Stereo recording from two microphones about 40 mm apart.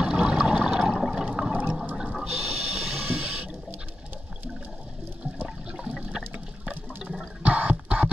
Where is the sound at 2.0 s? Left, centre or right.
Centre.